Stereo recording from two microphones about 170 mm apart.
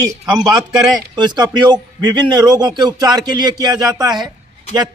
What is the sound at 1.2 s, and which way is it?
A man's voice, 25° right (ahead or behind).